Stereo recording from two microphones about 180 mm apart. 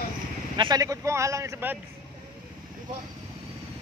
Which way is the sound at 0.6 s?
25° right (ahead or behind).